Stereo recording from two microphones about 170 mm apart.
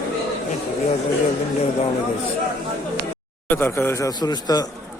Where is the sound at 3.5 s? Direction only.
15° left (ahead or behind).